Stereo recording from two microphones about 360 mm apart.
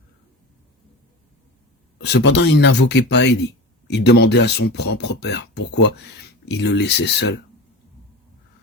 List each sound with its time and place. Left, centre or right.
2.1 s speech: left